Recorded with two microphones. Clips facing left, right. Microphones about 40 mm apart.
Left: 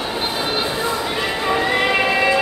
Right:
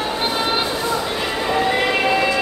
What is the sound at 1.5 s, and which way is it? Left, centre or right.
Train, centre.